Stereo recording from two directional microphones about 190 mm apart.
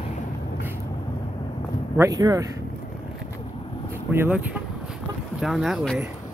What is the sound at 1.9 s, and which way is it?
Speech, 20° right (ahead or behind).